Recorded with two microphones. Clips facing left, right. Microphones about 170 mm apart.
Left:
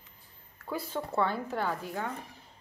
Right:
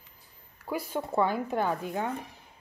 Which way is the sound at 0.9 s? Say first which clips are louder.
Right 3 dB; 15° right (ahead or behind).